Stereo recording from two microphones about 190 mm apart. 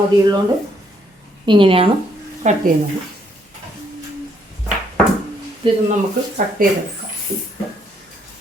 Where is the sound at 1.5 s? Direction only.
25° right (ahead or behind).